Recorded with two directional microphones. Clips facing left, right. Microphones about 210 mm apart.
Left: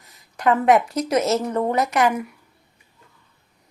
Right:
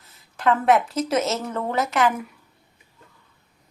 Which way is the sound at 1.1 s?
Centre (ahead or behind).